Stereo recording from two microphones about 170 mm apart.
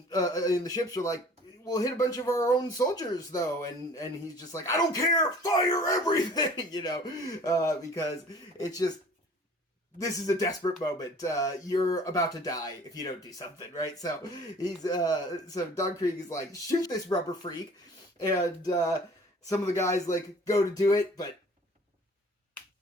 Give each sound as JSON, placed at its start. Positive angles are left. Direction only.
{"t": 0.1, "sound": "speech", "side_deg": 20}
{"t": 10.0, "sound": "speech", "side_deg": 20}